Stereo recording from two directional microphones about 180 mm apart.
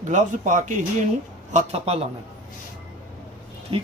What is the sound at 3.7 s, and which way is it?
Speech, 30° right (ahead or behind).